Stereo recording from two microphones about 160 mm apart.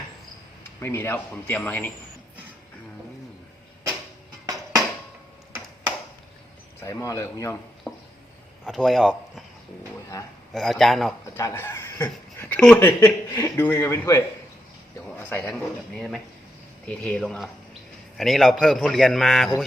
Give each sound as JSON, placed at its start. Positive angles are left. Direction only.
{"t": 0.8, "sound": "speech", "side_deg": 15}
{"t": 4.4, "sound": "music", "side_deg": -20}
{"t": 6.7, "sound": "speech", "side_deg": 20}
{"t": 7.9, "sound": "a sound", "side_deg": 15}
{"t": 8.6, "sound": "speech", "side_deg": 0}
{"t": 10.5, "sound": "a man's voice", "side_deg": 0}
{"t": 11.3, "sound": "a sound", "side_deg": 15}
{"t": 12.5, "sound": "a man's voice", "side_deg": 10}